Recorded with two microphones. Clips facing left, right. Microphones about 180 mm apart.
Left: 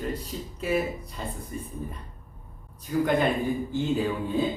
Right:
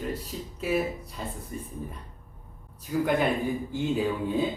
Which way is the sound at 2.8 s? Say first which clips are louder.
Left 1 dB; 5° right (ahead or behind).